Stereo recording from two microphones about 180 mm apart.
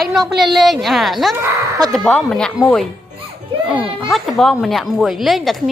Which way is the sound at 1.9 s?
5° left (ahead or behind).